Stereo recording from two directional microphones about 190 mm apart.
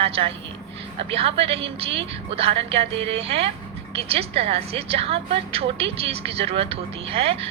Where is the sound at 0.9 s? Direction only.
30° right (ahead or behind).